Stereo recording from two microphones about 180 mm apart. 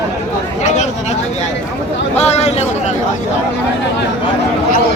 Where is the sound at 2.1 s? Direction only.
35° left (ahead or behind).